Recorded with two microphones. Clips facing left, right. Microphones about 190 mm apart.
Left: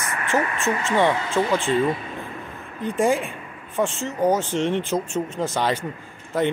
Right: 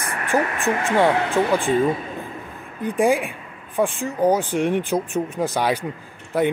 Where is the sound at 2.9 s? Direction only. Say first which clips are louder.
Right 2 dB; 15° right (ahead or behind).